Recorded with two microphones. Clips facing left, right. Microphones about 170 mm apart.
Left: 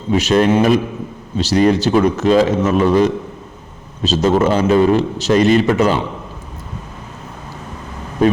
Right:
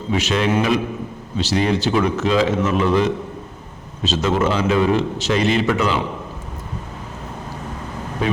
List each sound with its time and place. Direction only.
0.1 s a man's voice: 40° left (ahead or behind)